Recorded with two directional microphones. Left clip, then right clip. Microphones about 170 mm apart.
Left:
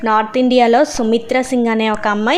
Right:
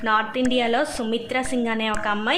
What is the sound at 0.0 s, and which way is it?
A woman's voice, 40° left (ahead or behind).